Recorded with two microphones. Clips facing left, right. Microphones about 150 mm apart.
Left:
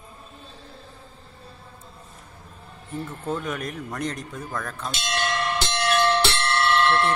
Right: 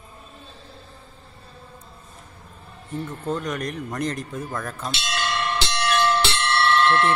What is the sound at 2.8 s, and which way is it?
Speech, 5° left (ahead or behind).